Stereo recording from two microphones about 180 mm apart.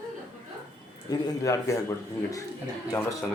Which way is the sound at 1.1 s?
20° left (ahead or behind).